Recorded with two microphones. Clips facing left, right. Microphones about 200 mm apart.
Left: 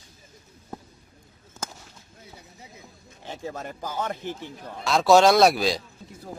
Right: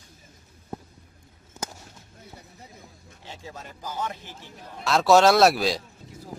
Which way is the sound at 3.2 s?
50° left (ahead or behind).